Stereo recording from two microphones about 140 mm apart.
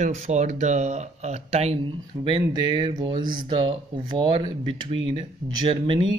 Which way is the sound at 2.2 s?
40° right (ahead or behind).